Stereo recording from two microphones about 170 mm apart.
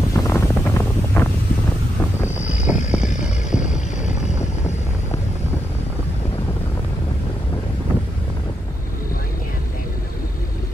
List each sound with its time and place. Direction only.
0.1 s wind noise: 15° left (ahead or behind)
2.5 s vehicle: 5° right (ahead or behind)
3.2 s music: 5° right (ahead or behind)
4.0 s boat: 40° left (ahead or behind)